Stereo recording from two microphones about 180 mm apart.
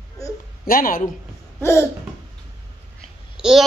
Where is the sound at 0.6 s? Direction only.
55° left (ahead or behind).